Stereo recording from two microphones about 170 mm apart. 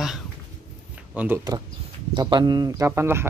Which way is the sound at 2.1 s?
25° right (ahead or behind).